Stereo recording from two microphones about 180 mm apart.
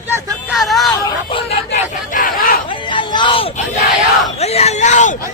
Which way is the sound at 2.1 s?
50° left (ahead or behind).